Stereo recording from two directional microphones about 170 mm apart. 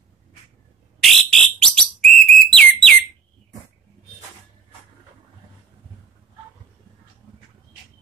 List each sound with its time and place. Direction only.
1.0 s whistle: 5° left (ahead or behind)